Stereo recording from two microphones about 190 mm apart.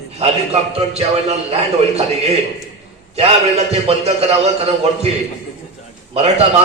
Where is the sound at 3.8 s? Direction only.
35° right (ahead or behind).